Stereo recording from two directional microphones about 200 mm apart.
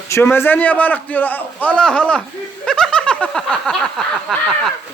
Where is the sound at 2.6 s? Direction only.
5° left (ahead or behind).